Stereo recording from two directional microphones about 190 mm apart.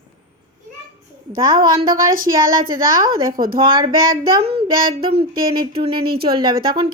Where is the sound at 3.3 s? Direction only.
50° right (ahead or behind).